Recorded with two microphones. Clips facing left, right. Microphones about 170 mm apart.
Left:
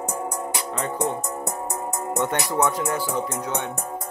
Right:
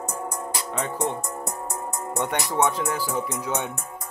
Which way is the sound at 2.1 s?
25° right (ahead or behind).